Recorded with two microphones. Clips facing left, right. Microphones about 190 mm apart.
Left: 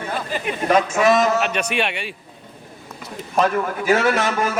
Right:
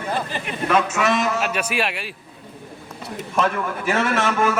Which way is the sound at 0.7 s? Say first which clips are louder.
Left 4 dB; 40° left (ahead or behind).